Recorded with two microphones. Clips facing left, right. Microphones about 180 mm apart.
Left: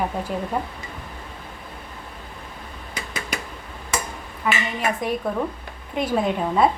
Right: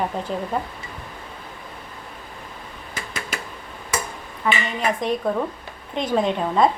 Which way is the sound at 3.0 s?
15° left (ahead or behind).